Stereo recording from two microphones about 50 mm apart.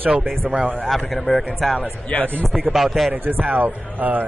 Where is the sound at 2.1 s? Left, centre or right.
Left.